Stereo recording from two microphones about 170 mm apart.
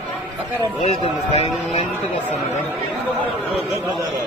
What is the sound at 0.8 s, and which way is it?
Speech, 40° left (ahead or behind).